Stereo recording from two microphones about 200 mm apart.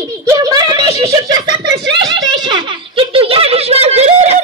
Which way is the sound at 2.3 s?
25° right (ahead or behind).